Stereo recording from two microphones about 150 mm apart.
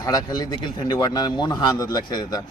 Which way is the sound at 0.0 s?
25° left (ahead or behind).